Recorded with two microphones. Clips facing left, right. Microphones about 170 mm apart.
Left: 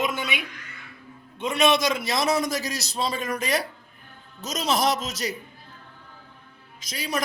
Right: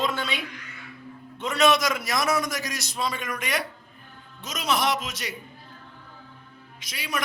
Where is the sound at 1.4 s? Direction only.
25° left (ahead or behind); by 5.4 s 40° left (ahead or behind).